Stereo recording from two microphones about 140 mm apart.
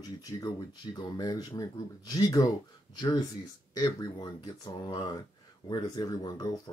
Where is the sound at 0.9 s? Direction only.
30° left (ahead or behind).